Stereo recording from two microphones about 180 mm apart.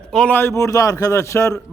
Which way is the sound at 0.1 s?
5° left (ahead or behind).